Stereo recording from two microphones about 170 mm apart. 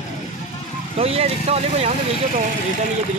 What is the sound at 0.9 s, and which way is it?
Speech, 35° right (ahead or behind).